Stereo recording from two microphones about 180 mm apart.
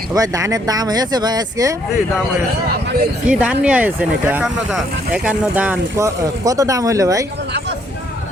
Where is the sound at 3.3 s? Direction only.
5° right (ahead or behind).